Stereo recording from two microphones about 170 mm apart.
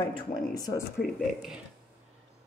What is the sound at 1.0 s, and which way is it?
Speech, centre (ahead or behind).